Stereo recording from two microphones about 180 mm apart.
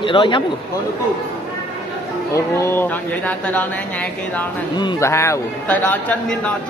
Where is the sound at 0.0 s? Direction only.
25° left (ahead or behind).